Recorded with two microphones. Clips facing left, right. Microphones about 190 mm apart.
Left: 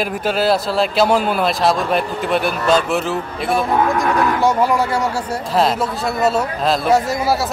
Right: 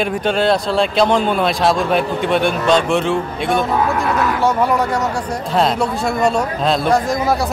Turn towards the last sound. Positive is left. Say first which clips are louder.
# right 1 dB
turn(degrees=5)  # may be behind; listen again after turning